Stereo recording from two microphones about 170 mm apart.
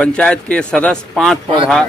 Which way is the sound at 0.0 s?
5° left (ahead or behind).